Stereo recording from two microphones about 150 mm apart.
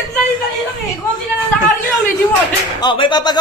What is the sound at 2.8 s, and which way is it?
Speech, 30° left (ahead or behind).